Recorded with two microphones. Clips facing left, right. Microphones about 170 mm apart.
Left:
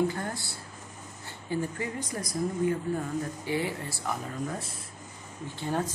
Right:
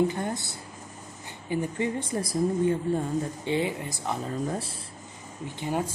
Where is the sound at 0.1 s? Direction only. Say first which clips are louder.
Right 4 dB; 20° right (ahead or behind).